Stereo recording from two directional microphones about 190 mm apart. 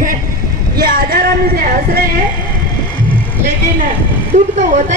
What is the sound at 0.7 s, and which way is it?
Speech, 50° right (ahead or behind).